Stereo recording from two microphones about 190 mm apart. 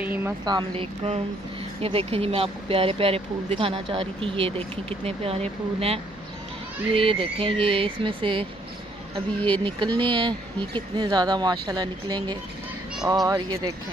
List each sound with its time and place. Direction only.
0.0 s a sound: 10° right (ahead or behind)
0.5 s speech: 25° right (ahead or behind)
9.5 s speech: 25° right (ahead or behind)